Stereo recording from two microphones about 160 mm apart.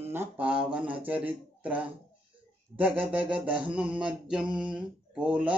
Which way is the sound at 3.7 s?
5° right (ahead or behind).